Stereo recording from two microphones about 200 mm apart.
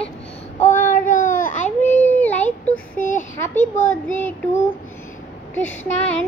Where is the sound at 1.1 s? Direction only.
40° left (ahead or behind).